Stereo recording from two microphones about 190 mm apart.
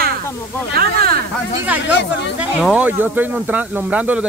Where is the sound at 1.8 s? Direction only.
65° left (ahead or behind).